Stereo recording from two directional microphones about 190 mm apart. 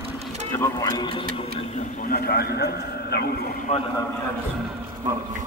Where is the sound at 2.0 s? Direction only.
55° left (ahead or behind).